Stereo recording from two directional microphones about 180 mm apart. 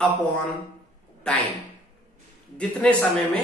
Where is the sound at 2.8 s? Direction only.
5° left (ahead or behind).